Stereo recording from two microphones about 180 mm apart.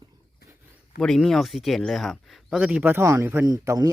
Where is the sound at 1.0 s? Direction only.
Centre (ahead or behind).